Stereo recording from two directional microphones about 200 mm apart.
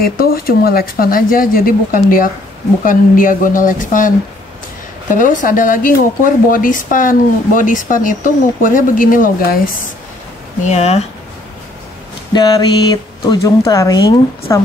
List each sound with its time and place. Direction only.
0.0 s speech: 45° left (ahead or behind)
5.1 s speech: 40° left (ahead or behind)
10.7 s speech: 35° left (ahead or behind)
12.3 s a sound: 20° left (ahead or behind)
13.7 s speech: 15° left (ahead or behind)